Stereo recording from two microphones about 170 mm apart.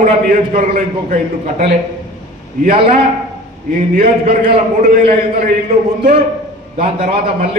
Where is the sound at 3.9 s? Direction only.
55° right (ahead or behind).